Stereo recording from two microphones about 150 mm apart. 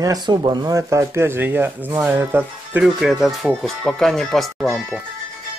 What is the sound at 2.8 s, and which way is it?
Speech, centre (ahead or behind).